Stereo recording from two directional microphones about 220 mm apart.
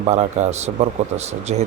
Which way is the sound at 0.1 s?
30° right (ahead or behind).